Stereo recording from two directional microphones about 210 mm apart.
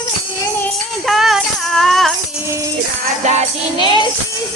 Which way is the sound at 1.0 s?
Centre (ahead or behind).